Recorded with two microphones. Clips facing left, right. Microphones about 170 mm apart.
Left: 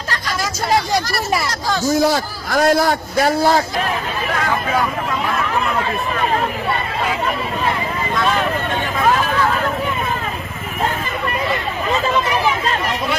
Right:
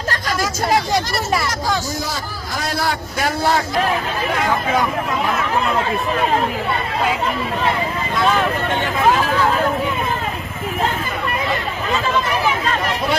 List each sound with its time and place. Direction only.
1.9 s a man's voice: 70° left (ahead or behind); by 3.6 s 35° left (ahead or behind)